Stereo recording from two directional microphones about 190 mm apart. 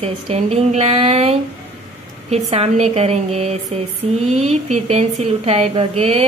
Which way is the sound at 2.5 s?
35° right (ahead or behind).